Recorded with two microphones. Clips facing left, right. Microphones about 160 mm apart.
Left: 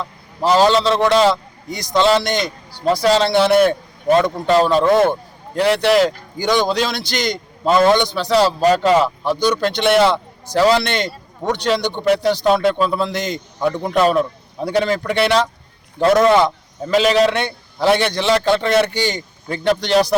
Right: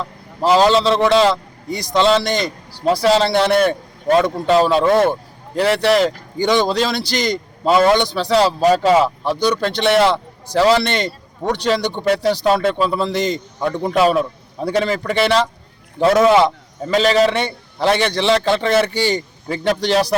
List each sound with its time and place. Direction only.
0.0 s a man's voice: centre (ahead or behind)